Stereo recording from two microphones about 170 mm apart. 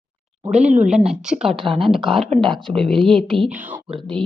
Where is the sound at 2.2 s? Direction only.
35° right (ahead or behind).